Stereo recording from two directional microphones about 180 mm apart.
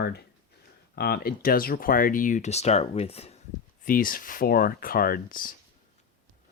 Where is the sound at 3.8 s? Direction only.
50° left (ahead or behind).